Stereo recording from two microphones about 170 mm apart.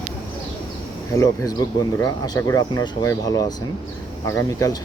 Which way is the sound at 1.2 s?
20° left (ahead or behind).